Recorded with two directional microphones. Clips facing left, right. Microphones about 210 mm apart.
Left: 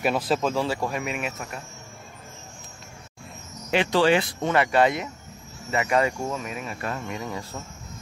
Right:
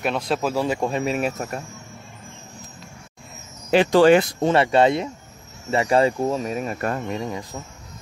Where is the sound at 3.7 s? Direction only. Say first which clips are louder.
Right 6 dB; 40° right (ahead or behind).